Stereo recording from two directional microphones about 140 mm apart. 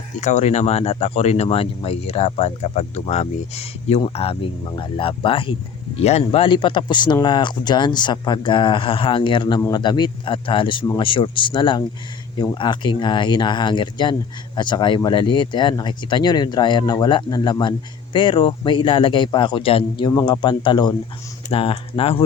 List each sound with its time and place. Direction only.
0.2 s speech: 55° left (ahead or behind); by 9.6 s 35° left (ahead or behind)
9.6 s a man's voice: 20° left (ahead or behind)
9.8 s speech: 35° left (ahead or behind)
20.1 s speech: 25° left (ahead or behind)